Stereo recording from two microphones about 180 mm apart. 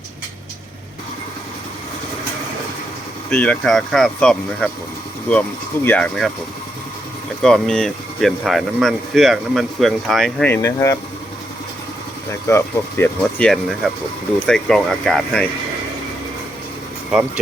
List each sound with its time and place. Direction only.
3.2 s speech: 5° left (ahead or behind)
7.4 s speech: 5° left (ahead or behind)
10.5 s speech: 15° left (ahead or behind)
12.3 s speech: 15° left (ahead or behind)
13.1 s speech: 5° left (ahead or behind)
17.1 s speech: 5° right (ahead or behind)